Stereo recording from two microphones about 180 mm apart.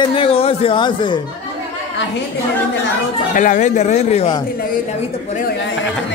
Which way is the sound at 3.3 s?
45° left (ahead or behind).